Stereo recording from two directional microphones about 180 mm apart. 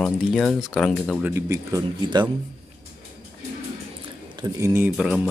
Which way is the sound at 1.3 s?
15° right (ahead or behind).